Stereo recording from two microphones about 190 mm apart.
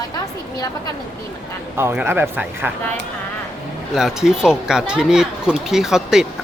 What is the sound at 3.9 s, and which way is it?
Speech, centre (ahead or behind).